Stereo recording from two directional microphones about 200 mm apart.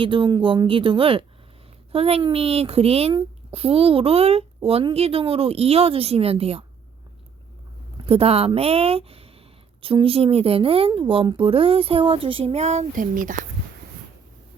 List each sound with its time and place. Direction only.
0.0 s a woman's voice: 25° right (ahead or behind)
7.9 s a woman's voice: 30° right (ahead or behind)